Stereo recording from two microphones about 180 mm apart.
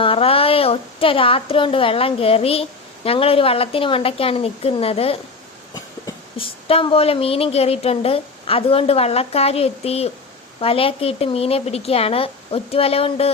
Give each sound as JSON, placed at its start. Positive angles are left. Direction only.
{"t": 0.0, "sound": "a woman's voice", "side_deg": 30}